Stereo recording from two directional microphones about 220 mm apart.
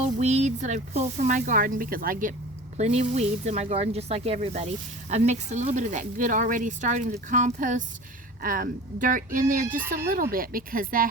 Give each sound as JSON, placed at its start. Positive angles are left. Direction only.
{"t": 0.0, "sound": "speech", "side_deg": -30}